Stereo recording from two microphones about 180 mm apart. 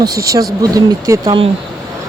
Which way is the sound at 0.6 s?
20° right (ahead or behind).